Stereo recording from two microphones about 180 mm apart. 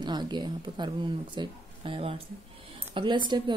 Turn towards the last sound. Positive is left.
turn(degrees=-25)  # may be behind; listen again after turning